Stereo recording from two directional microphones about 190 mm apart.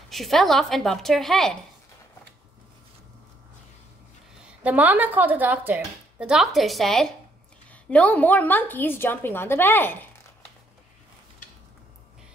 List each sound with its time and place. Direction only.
0.1 s a woman's voice: centre (ahead or behind)
4.4 s a woman's voice: 5° right (ahead or behind); by 9.9 s 10° left (ahead or behind)